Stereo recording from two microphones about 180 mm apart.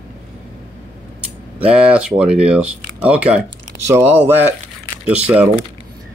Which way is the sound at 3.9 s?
10° right (ahead or behind).